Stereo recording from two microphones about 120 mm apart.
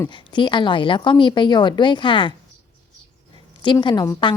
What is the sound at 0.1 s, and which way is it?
Speech, 40° left (ahead or behind).